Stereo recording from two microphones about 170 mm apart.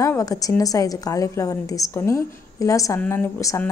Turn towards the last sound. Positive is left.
turn(degrees=15)  # may be behind; listen again after turning